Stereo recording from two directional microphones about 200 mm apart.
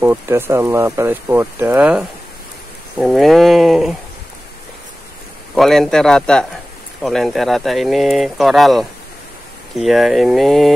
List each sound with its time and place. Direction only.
0.0 s speech: 10° right (ahead or behind)
5.5 s speech: centre (ahead or behind)